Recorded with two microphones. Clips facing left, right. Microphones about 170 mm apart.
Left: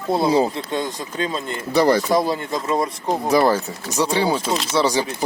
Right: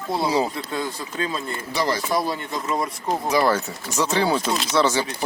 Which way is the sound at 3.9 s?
15° left (ahead or behind).